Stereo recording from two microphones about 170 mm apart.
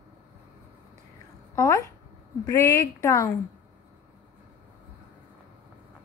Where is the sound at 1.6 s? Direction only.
15° left (ahead or behind).